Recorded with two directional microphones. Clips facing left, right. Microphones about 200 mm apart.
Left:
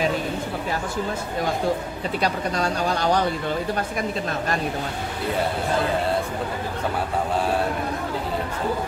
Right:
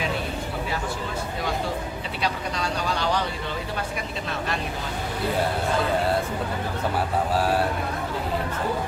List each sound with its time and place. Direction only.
2.2 s speech: 45° left (ahead or behind)